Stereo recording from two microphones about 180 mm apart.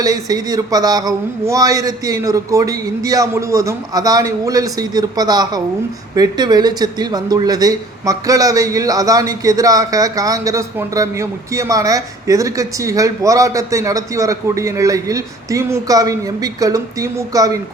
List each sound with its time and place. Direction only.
0.0 s speech: 20° right (ahead or behind)